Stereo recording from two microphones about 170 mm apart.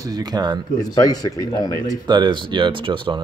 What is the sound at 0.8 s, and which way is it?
Speech, 20° left (ahead or behind).